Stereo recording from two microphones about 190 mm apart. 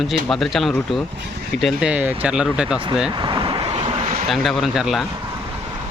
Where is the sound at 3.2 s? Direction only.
25° right (ahead or behind).